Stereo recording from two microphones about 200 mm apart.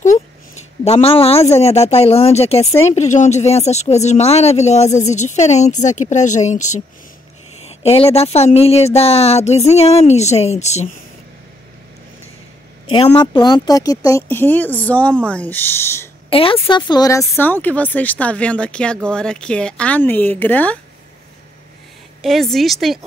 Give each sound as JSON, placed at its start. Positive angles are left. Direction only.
{"t": 0.0, "sound": "speech", "side_deg": 35}
{"t": 7.6, "sound": "a woman's voice", "side_deg": 30}
{"t": 12.9, "sound": "speech", "side_deg": 25}
{"t": 16.3, "sound": "a woman's voice", "side_deg": 25}
{"t": 17.2, "sound": "speech", "side_deg": 10}
{"t": 22.2, "sound": "a woman's voice", "side_deg": 0}